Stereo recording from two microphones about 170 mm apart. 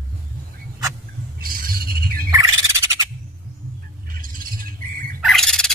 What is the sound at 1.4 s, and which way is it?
Squawk, 60° right (ahead or behind).